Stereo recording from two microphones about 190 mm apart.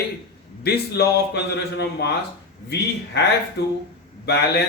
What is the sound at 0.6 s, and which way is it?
Speech, 55° left (ahead or behind).